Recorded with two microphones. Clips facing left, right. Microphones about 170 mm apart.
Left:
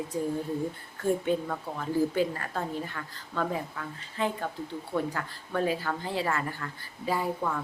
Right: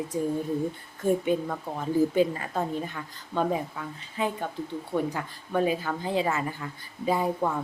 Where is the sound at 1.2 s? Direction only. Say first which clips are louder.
Right 2 dB; 15° right (ahead or behind).